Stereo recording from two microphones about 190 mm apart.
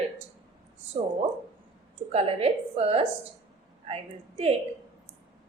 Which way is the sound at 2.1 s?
30° right (ahead or behind).